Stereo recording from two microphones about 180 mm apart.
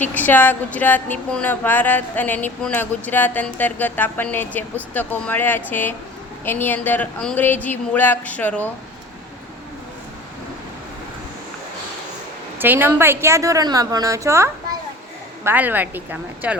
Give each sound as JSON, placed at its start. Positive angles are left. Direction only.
{"t": 0.0, "sound": "speech", "side_deg": 10}
{"t": 12.5, "sound": "a woman's voice", "side_deg": -10}